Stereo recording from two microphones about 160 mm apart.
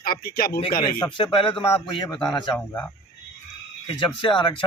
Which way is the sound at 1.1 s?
30° left (ahead or behind).